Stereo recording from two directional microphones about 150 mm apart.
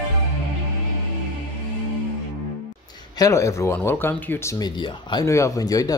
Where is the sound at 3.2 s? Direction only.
20° left (ahead or behind).